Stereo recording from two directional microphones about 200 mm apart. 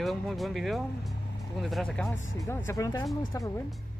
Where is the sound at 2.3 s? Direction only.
15° left (ahead or behind).